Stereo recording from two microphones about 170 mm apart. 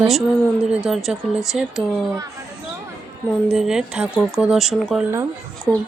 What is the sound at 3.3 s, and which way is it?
Speech, centre (ahead or behind).